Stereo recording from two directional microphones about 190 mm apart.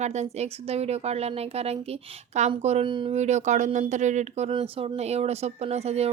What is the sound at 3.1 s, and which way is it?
Speech, 35° right (ahead or behind).